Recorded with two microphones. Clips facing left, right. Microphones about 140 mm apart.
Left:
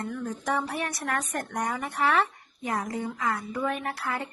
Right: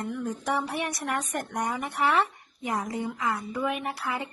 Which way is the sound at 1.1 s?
10° right (ahead or behind).